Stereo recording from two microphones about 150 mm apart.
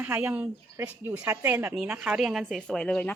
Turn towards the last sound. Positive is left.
turn(degrees=10)  # may be behind; listen again after turning